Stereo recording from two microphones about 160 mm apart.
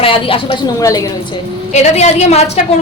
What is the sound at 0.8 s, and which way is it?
Speech, 20° left (ahead or behind).